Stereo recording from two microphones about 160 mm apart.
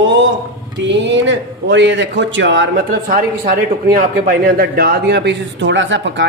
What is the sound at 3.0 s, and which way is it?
A man's voice, 60° right (ahead or behind).